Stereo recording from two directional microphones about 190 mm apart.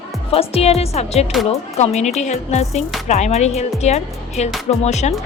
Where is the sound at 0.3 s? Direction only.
30° left (ahead or behind).